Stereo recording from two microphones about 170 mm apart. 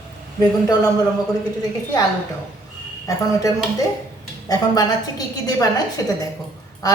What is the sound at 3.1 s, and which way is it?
Speech, 20° left (ahead or behind).